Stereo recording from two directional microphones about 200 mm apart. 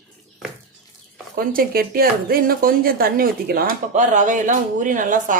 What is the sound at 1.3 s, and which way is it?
Speech, 45° right (ahead or behind).